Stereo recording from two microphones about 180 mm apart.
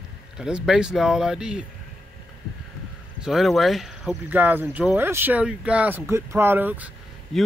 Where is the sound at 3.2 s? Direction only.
Centre (ahead or behind).